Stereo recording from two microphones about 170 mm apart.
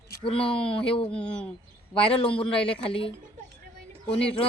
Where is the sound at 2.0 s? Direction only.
35° left (ahead or behind).